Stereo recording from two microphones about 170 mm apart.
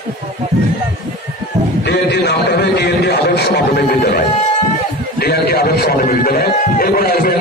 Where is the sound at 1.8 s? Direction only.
75° left (ahead or behind).